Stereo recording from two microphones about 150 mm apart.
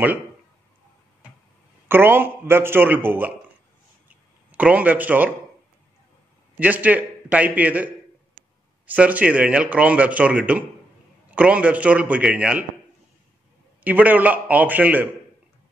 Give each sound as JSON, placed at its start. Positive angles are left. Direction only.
{"t": 1.9, "sound": "speech", "side_deg": -15}
{"t": 4.5, "sound": "speech", "side_deg": -10}
{"t": 6.6, "sound": "speech", "side_deg": -10}
{"t": 13.8, "sound": "speech", "side_deg": -10}